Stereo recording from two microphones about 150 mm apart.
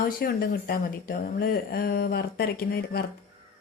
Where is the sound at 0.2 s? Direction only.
90° left.